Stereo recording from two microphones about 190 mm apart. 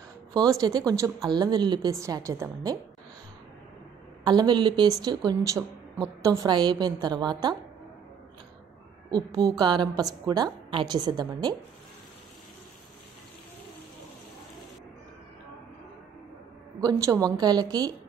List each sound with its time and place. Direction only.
0.3 s a woman's voice: 20° right (ahead or behind)
4.2 s a woman's voice: 20° right (ahead or behind)
9.1 s a woman's voice: 20° right (ahead or behind)
16.8 s a woman's voice: 20° right (ahead or behind)